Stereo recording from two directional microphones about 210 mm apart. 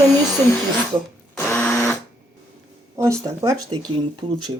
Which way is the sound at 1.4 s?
5° left (ahead or behind).